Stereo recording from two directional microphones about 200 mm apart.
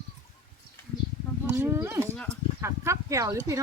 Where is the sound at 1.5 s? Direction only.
10° right (ahead or behind).